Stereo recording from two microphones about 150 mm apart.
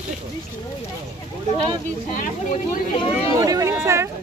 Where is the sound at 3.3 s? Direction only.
25° right (ahead or behind).